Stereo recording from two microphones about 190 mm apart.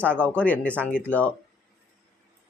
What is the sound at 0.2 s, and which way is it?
Speech, 5° left (ahead or behind).